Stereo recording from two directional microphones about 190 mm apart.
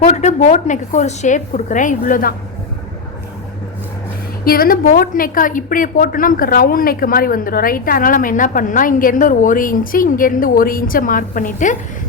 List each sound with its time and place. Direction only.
0.0 s a woman's voice: 40° left (ahead or behind)
4.4 s a woman's voice: 50° left (ahead or behind)